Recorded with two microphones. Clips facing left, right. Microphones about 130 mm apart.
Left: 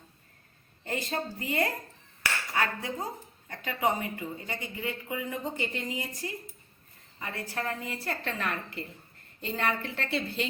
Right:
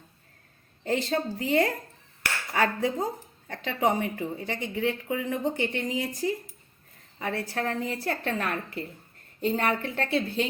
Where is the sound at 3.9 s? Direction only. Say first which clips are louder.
Right 5 dB; 90° right.